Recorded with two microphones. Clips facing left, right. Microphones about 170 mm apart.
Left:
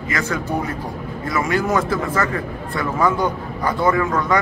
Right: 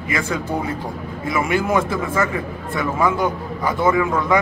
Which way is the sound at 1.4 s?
20° right (ahead or behind).